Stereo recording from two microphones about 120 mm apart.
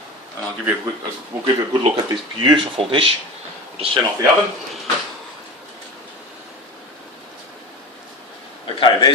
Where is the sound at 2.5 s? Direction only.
45° right (ahead or behind).